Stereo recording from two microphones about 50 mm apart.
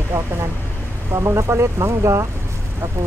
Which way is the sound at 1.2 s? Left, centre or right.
Right.